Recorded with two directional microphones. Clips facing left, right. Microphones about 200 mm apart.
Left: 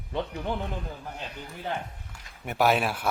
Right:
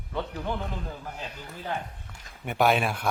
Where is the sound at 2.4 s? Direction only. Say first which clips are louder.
Even; 5° left (ahead or behind).